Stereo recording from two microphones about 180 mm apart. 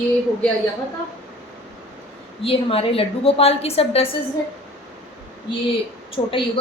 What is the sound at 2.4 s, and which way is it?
A woman's voice, 30° left (ahead or behind).